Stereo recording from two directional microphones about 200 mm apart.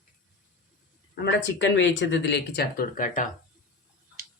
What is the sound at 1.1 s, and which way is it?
Speech, 65° left (ahead or behind).